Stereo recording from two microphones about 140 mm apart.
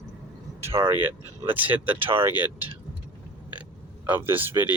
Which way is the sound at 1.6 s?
15° right (ahead or behind).